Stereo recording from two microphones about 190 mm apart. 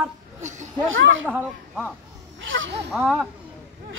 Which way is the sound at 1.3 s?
5° right (ahead or behind).